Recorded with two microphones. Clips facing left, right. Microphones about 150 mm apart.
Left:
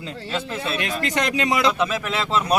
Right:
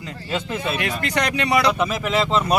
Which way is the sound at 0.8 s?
25° left (ahead or behind).